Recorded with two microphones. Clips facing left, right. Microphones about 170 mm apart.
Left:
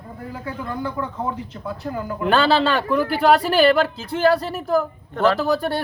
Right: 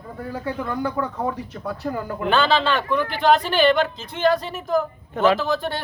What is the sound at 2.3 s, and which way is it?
Speech, 35° left (ahead or behind).